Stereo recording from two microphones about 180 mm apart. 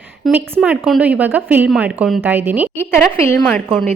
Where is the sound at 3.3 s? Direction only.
5° left (ahead or behind).